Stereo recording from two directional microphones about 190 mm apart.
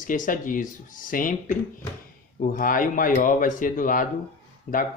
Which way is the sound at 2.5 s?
45° left (ahead or behind).